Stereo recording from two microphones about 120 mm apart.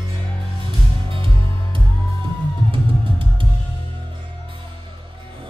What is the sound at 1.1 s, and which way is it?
Music, 45° right (ahead or behind).